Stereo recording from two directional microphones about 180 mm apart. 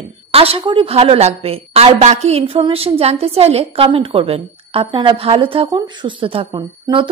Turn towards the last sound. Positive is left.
turn(degrees=-25)  # may be behind; listen again after turning